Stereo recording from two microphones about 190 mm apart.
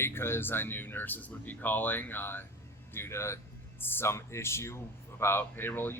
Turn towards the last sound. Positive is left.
turn(degrees=10)  # may be behind; listen again after turning